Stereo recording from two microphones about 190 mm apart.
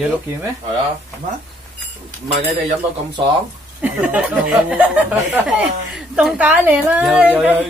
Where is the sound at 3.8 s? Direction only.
5° right (ahead or behind).